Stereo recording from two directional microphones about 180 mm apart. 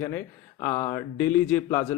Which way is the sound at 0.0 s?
15° left (ahead or behind).